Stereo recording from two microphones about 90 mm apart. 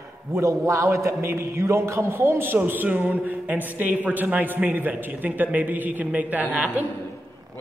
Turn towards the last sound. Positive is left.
turn(degrees=-20)  # may be behind; listen again after turning